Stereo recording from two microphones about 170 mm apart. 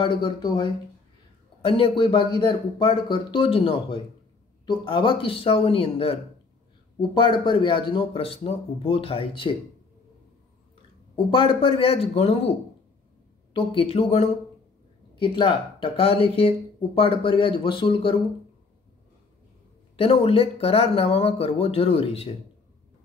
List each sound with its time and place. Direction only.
0.0 s speech: 30° left (ahead or behind)
11.2 s speech: 30° left (ahead or behind)
13.5 s speech: 30° left (ahead or behind)
20.0 s speech: 35° left (ahead or behind)